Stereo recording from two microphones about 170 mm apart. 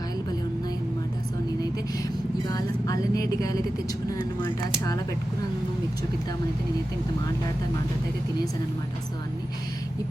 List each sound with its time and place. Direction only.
2.5 s speech: 20° left (ahead or behind)